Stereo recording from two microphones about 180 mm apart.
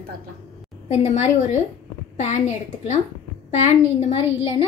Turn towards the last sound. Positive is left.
turn(degrees=35)  # may be behind; listen again after turning